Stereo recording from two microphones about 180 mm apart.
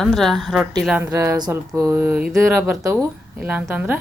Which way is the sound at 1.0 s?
15° right (ahead or behind).